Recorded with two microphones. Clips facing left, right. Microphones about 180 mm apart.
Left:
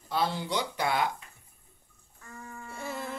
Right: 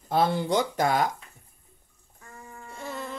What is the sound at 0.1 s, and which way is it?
Speech, 50° right (ahead or behind).